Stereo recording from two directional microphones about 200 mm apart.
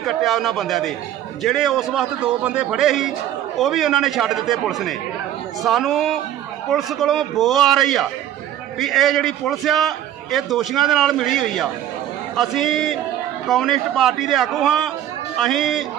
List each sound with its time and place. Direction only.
0.0 s a man's voice: centre (ahead or behind)